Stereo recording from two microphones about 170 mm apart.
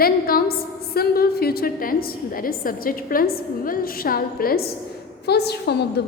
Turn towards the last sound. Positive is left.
turn(degrees=80)